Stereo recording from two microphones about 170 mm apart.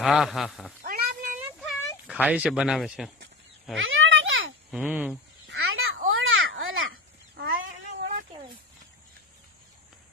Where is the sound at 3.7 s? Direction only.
90° right.